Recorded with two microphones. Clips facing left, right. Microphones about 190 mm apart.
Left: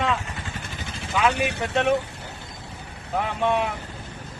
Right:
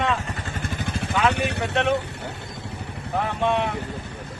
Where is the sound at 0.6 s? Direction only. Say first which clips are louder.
Right 7 dB; 55° right (ahead or behind).